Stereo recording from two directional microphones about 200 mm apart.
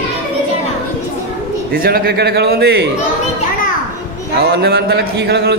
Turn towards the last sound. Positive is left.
turn(degrees=-55)  # may be behind; listen again after turning